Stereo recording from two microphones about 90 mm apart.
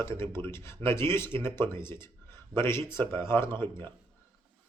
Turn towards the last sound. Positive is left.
turn(degrees=30)  # may be behind; listen again after turning